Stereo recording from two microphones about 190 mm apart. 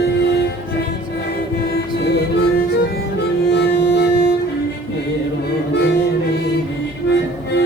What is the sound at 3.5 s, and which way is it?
Music, 60° left (ahead or behind).